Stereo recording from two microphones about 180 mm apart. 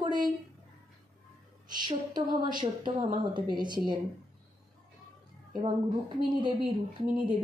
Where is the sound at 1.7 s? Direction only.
25° right (ahead or behind).